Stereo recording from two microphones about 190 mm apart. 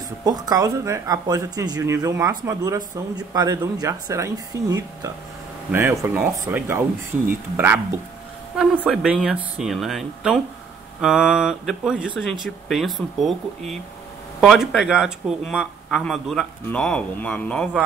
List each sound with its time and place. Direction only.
0.2 s speech: 20° right (ahead or behind); by 17.8 s 5° left (ahead or behind)